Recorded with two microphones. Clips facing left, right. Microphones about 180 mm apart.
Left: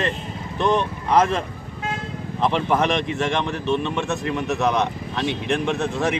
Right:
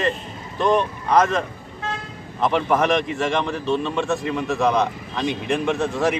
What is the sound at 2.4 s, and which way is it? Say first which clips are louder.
Speech: right 1 dB; centre (ahead or behind).